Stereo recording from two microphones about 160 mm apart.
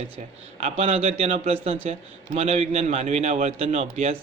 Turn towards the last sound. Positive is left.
turn(degrees=-40)  # may be behind; listen again after turning